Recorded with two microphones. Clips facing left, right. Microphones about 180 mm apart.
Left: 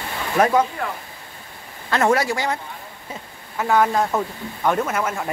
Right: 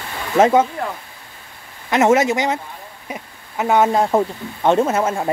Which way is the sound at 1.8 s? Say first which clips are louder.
Right 4 dB; 20° right (ahead or behind).